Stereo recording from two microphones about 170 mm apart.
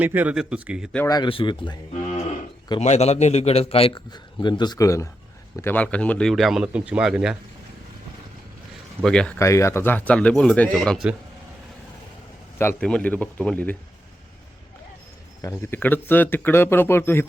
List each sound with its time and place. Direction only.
0.0 s speech: 10° right (ahead or behind)
1.0 s speech: 25° left (ahead or behind)
2.8 s a man's voice: 40° left (ahead or behind); by 7.3 s 5° right (ahead or behind)
9.0 s speech: 5° left (ahead or behind)
9.4 s speech: 15° left (ahead or behind); by 11.1 s centre (ahead or behind)
12.5 s speech: 10° left (ahead or behind)
15.4 s speech: 15° left (ahead or behind)